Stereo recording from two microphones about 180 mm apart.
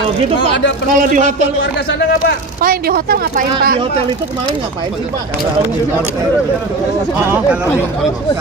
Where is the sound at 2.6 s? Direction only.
55° right (ahead or behind).